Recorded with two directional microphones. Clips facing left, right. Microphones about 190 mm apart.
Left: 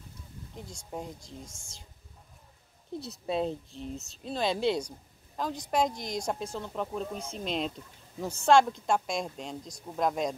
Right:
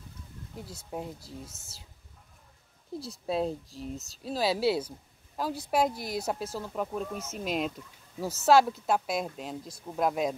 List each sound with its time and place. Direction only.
0.6 s speech: 5° right (ahead or behind)
3.0 s speech: centre (ahead or behind)